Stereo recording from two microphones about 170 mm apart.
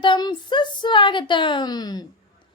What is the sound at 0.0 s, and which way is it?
A woman's voice, 25° left (ahead or behind).